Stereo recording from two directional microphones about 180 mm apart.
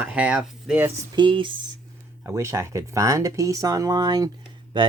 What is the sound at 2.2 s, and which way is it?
Speech, 15° right (ahead or behind).